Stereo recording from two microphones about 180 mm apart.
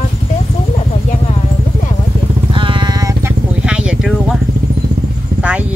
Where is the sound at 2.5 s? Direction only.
30° right (ahead or behind).